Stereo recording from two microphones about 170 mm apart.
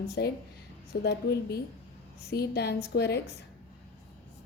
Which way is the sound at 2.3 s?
75° left (ahead or behind).